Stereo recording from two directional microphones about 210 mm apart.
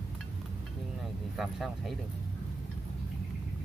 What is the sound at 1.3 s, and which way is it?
Speech, centre (ahead or behind).